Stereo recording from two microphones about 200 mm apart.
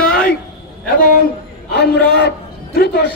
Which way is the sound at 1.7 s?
55° left (ahead or behind).